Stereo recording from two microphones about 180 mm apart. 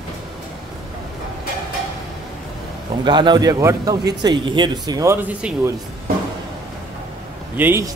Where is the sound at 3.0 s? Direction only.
25° right (ahead or behind); by 5.6 s 5° right (ahead or behind).